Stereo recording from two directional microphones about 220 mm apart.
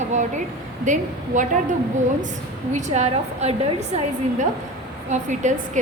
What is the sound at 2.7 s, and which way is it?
A woman's voice, 30° right (ahead or behind).